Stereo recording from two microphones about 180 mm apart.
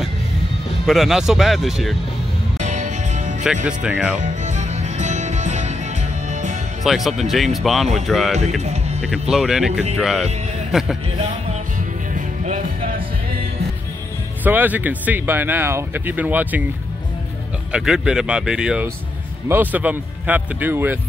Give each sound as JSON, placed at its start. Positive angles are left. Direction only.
{"t": 0.8, "sound": "speech", "side_deg": 0}
{"t": 2.6, "sound": "music", "side_deg": -40}
{"t": 3.6, "sound": "speech", "side_deg": -5}
{"t": 4.2, "sound": "music", "side_deg": -40}
{"t": 6.8, "sound": "speech", "side_deg": 0}
{"t": 12.1, "sound": "music", "side_deg": -45}
{"t": 14.4, "sound": "speech", "side_deg": -10}
{"t": 17.7, "sound": "speech", "side_deg": -5}